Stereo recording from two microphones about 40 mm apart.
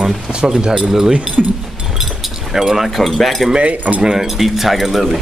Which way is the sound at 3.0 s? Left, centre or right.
Centre.